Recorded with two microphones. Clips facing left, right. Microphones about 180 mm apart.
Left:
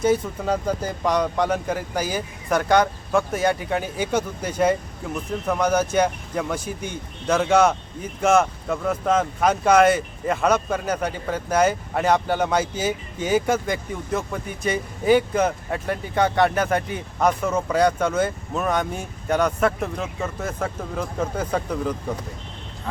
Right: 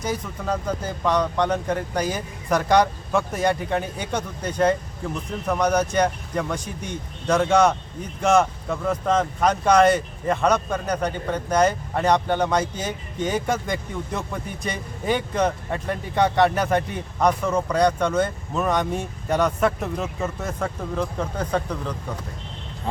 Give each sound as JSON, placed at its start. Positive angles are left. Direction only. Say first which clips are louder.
{"t": 1.0, "sound": "speech", "louder": "even", "side_deg": 10}